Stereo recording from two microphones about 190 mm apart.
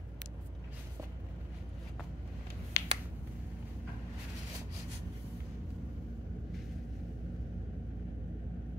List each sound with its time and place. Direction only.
2.8 s finger snapping: 15° left (ahead or behind)